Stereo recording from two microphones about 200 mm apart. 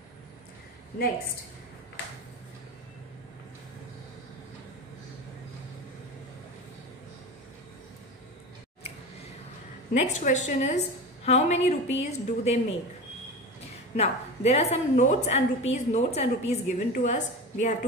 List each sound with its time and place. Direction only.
9.9 s a woman's voice: 35° left (ahead or behind)
13.9 s a woman's voice: 30° left (ahead or behind)